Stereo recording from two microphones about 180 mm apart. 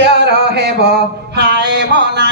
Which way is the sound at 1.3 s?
70° right (ahead or behind).